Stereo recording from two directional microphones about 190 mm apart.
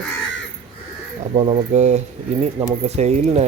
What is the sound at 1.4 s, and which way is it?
Speech, 35° right (ahead or behind).